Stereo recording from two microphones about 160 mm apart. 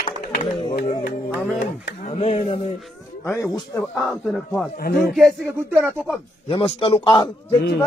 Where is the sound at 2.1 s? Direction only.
40° left (ahead or behind).